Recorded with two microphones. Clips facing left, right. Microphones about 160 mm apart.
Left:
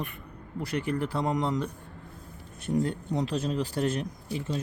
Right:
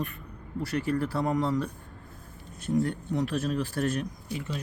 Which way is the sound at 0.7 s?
20° left (ahead or behind).